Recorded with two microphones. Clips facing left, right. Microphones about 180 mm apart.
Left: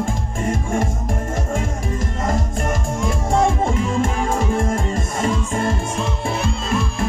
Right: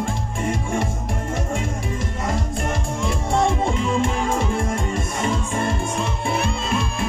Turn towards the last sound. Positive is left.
turn(degrees=40)  # may be behind; listen again after turning